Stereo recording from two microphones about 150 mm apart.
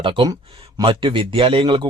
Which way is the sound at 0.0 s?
35° right (ahead or behind).